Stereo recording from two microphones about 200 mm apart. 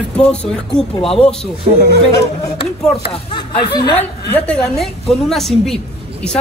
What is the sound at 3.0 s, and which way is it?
Speech, 25° left (ahead or behind).